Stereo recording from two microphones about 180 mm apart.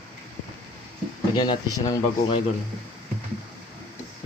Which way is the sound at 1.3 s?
20° left (ahead or behind).